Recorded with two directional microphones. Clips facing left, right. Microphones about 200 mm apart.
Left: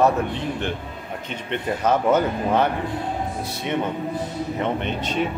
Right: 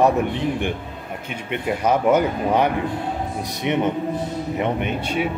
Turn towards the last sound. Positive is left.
turn(degrees=-10)  # may be behind; listen again after turning